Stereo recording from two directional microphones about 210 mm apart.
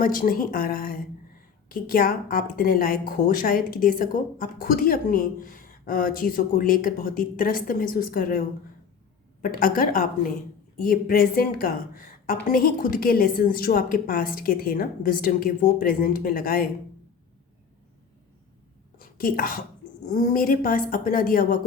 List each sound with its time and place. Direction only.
0.0 s a woman's voice: 40° left (ahead or behind)
18.9 s a sound: 45° left (ahead or behind)
20.1 s a woman's voice: 35° left (ahead or behind)